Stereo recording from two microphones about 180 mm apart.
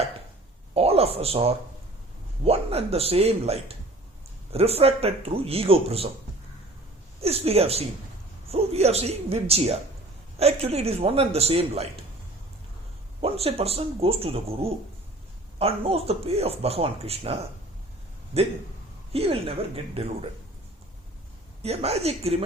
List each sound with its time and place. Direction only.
0.7 s speech: 35° right (ahead or behind)
7.2 s speech: 35° right (ahead or behind)
13.2 s speech: 35° right (ahead or behind)
19.1 s speech: 30° right (ahead or behind)
21.6 s speech: 35° right (ahead or behind)